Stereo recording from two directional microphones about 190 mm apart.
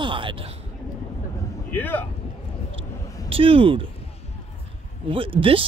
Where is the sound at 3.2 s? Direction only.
30° right (ahead or behind).